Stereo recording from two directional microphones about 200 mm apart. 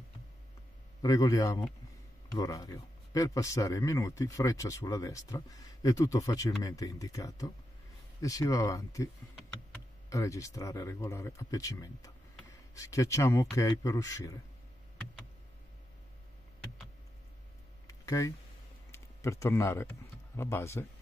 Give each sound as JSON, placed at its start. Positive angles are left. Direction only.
{"t": 1.0, "sound": "speech", "side_deg": 20}
{"t": 17.8, "sound": "a sound", "side_deg": 15}
{"t": 18.9, "sound": "speech", "side_deg": 15}